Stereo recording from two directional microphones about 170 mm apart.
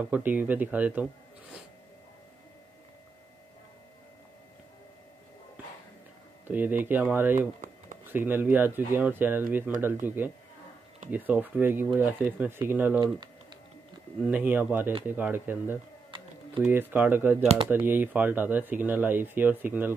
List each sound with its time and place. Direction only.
0.1 s speech: 10° right (ahead or behind)
6.4 s speech: 10° right (ahead or behind)
7.3 s a sound: 50° right (ahead or behind)
8.1 s speech: 10° right (ahead or behind)
13.0 s typing: 25° right (ahead or behind)
14.2 s speech: 10° right (ahead or behind)
16.1 s typing: 30° right (ahead or behind)
16.6 s speech: 10° right (ahead or behind)
17.4 s speech: 40° right (ahead or behind)
17.6 s speech: 10° right (ahead or behind)